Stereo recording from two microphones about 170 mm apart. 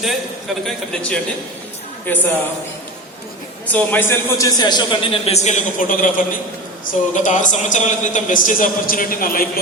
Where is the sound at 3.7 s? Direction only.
10° left (ahead or behind).